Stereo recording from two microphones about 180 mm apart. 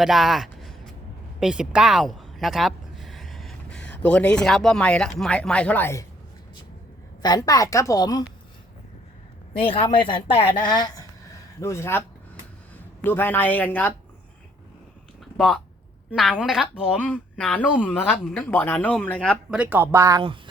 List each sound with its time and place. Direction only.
0.0 s a sound: centre (ahead or behind)
1.4 s speech: 5° right (ahead or behind); by 6.1 s 15° left (ahead or behind)
7.2 s speech: 20° left (ahead or behind)
9.6 s speech: 30° left (ahead or behind); by 13.9 s 10° left (ahead or behind)
15.4 s speech: centre (ahead or behind)
17.0 s speech: 5° left (ahead or behind)
19.5 s speech: 10° right (ahead or behind)